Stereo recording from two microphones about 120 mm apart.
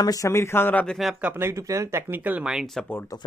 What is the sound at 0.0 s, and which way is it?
Speech, 30° left (ahead or behind).